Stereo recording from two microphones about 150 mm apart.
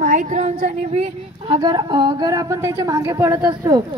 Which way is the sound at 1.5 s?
30° right (ahead or behind).